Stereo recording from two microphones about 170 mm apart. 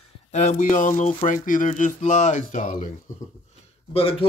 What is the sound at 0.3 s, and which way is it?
Speech, 45° left (ahead or behind).